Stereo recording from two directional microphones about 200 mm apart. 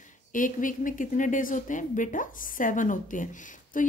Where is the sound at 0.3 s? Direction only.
40° left (ahead or behind).